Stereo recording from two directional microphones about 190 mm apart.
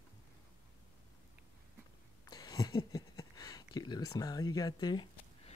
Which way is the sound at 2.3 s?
20° left (ahead or behind).